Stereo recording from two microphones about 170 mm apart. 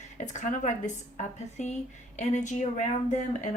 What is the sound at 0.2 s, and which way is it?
A woman's voice, 45° left (ahead or behind).